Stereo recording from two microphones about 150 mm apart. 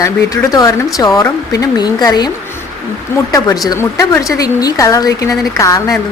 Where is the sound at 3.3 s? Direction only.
25° left (ahead or behind).